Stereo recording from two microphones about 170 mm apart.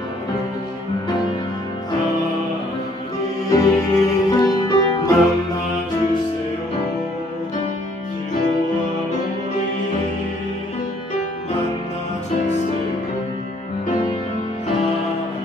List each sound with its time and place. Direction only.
3.5 s music: 20° left (ahead or behind)